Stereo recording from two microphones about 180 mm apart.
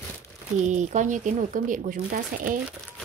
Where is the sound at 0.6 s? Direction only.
40° right (ahead or behind).